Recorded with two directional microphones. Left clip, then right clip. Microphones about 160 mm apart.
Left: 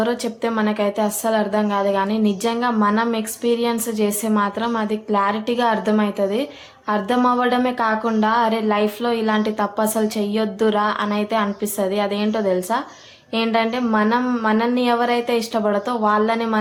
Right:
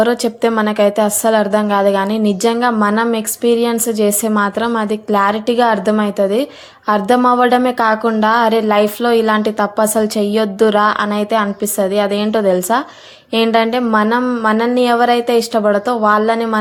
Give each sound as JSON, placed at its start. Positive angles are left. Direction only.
{"t": 0.0, "sound": "a woman's voice", "side_deg": -40}